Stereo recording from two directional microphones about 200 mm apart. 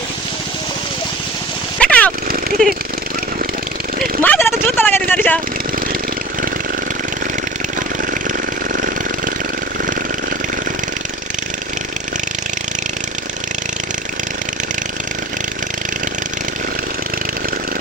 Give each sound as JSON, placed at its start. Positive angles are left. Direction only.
{"t": 1.8, "sound": "vehicle", "side_deg": 5}
{"t": 2.2, "sound": "jackhammer", "side_deg": -45}
{"t": 4.2, "sound": "vehicle", "side_deg": 10}